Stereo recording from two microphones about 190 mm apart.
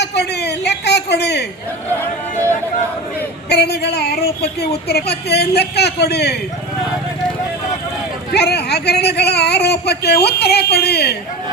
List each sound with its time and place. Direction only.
0.0 s a sound: 60° left (ahead or behind)
3.5 s speech: 60° left (ahead or behind)
8.3 s speech: 55° left (ahead or behind)